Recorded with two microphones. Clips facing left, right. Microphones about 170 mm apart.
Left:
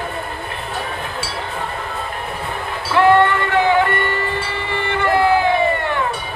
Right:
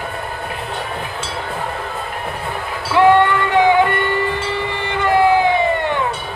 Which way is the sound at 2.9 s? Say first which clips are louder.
Right 1 dB; 15° right (ahead or behind).